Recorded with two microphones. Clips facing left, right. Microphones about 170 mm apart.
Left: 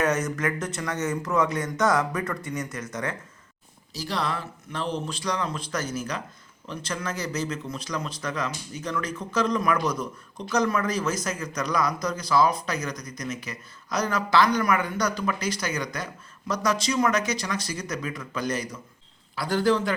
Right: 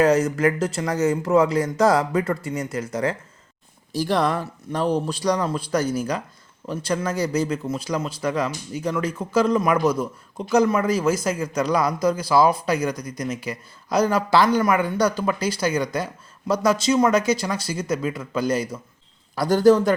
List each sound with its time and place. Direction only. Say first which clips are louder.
0.0 s speech: right 7 dB; 30° right (ahead or behind)
3.9 s speech: right 8 dB; 50° right (ahead or behind); by 18.8 s 30° right (ahead or behind)
19.4 s a man's voice: right 7 dB; 40° right (ahead or behind)